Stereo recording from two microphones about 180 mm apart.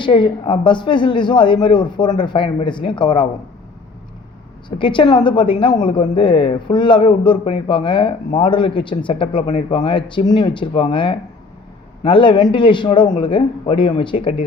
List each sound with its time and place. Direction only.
0.0 s speech: 25° left (ahead or behind)
4.8 s speech: 25° left (ahead or behind)